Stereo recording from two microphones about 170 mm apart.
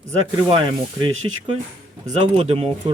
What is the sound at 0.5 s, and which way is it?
Speech, 30° right (ahead or behind).